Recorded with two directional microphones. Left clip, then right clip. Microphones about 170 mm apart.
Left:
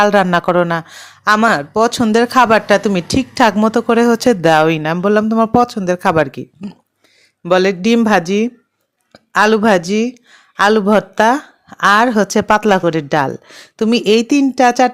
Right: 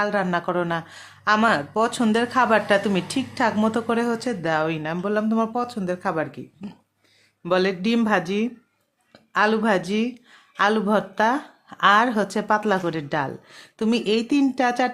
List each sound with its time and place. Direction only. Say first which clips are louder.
0.0 s a woman's voice: left 11 dB; 50° left (ahead or behind)
6.6 s speech: left 8 dB; 35° left (ahead or behind)